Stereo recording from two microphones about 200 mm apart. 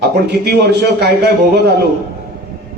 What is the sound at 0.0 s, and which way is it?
A man's voice, 55° right (ahead or behind).